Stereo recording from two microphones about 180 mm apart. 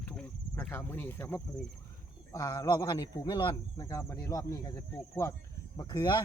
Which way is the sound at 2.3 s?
20° left (ahead or behind).